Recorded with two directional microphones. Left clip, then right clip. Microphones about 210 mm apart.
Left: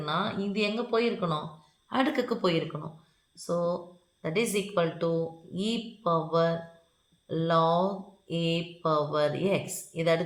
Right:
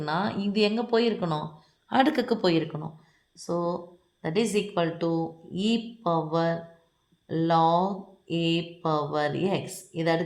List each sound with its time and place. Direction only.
0.0 s speech: 45° right (ahead or behind)
3.4 s speech: 35° right (ahead or behind)